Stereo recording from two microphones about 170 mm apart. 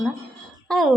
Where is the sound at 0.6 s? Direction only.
Centre (ahead or behind).